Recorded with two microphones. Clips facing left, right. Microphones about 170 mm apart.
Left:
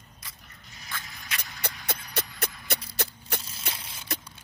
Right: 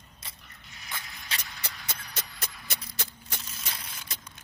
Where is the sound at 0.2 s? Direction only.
25° right (ahead or behind).